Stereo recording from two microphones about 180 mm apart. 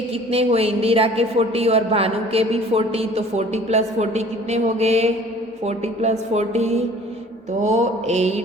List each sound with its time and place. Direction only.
0.3 s a woman's voice: 35° right (ahead or behind)